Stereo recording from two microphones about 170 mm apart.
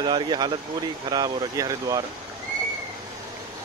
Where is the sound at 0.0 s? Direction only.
25° right (ahead or behind).